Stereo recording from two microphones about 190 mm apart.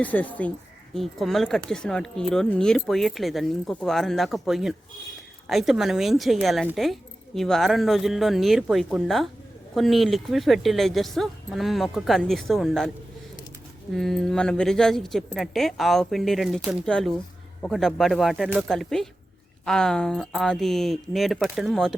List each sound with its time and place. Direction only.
0.0 s speech: 10° left (ahead or behind)
13.9 s speech: centre (ahead or behind)